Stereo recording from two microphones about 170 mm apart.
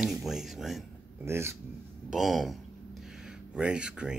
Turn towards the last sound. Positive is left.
turn(degrees=-5)  # may be behind; listen again after turning